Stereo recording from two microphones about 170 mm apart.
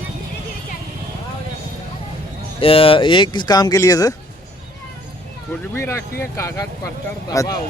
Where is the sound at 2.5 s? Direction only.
35° left (ahead or behind).